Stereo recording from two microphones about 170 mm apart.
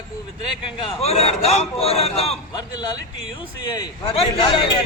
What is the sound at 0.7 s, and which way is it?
A man's voice, 35° left (ahead or behind).